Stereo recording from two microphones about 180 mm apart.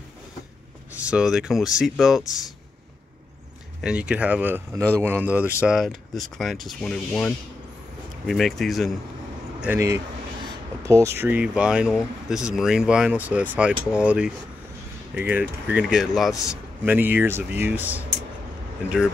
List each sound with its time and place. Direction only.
1.0 s speech: 5° right (ahead or behind)
3.8 s speech: 5° right (ahead or behind)
9.6 s speech: 15° right (ahead or behind)